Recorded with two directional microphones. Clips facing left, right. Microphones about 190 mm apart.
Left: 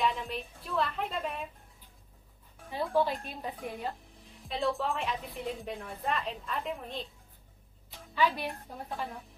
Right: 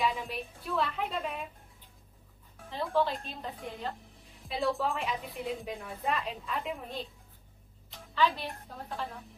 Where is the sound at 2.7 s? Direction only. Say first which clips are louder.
Left 1 dB; 10° left (ahead or behind).